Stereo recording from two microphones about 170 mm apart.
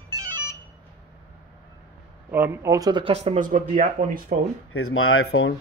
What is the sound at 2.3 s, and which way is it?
Speech, 15° right (ahead or behind).